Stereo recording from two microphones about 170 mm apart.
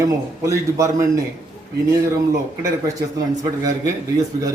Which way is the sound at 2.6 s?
20° right (ahead or behind).